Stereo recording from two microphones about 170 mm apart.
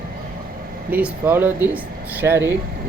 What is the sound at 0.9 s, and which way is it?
Speech, 10° right (ahead or behind).